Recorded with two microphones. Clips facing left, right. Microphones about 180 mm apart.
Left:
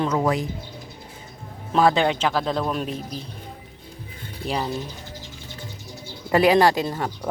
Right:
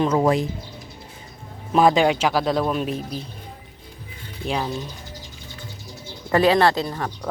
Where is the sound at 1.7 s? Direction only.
15° right (ahead or behind).